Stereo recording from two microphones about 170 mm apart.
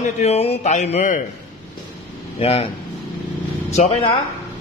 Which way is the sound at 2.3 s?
35° left (ahead or behind).